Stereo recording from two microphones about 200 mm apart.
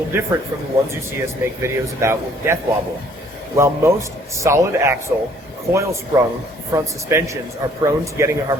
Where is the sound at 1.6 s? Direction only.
15° right (ahead or behind).